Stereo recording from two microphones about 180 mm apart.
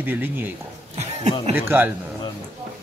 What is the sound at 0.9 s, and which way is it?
Speech, 40° right (ahead or behind).